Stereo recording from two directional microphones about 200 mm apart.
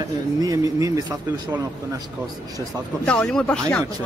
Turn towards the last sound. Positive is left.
turn(degrees=5)  # may be behind; listen again after turning